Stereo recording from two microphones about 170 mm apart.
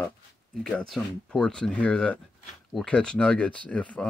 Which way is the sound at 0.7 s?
Centre (ahead or behind).